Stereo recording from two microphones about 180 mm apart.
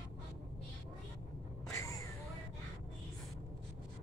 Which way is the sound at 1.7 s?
15° left (ahead or behind).